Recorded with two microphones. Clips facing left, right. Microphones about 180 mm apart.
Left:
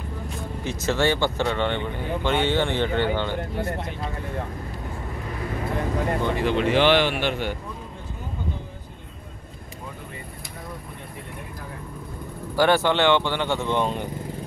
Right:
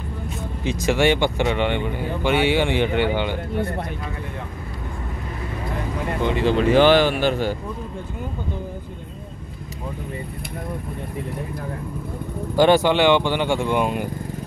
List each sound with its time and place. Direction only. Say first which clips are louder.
0.7 s speech: right 4 dB; 15° right (ahead or behind)
6.2 s speech: right 7 dB; 20° right (ahead or behind)
6.5 s speech: right 4 dB; 40° right (ahead or behind)
12.5 s speech: right 4 dB; 15° right (ahead or behind)